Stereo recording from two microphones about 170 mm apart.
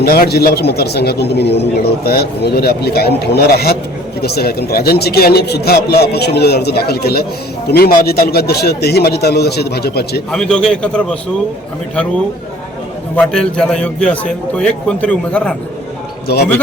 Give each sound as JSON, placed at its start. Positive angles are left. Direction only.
{"t": 0.0, "sound": "a man's voice", "side_deg": 65}
{"t": 10.3, "sound": "a man's voice", "side_deg": 5}
{"t": 13.1, "sound": "a man's voice", "side_deg": 5}
{"t": 16.2, "sound": "speech", "side_deg": 70}